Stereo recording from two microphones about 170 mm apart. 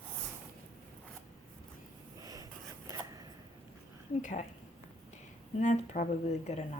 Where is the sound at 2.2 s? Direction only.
20° right (ahead or behind).